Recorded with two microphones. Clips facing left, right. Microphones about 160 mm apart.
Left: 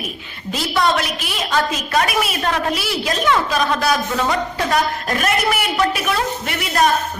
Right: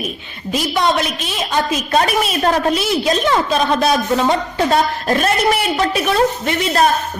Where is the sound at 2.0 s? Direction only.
35° right (ahead or behind).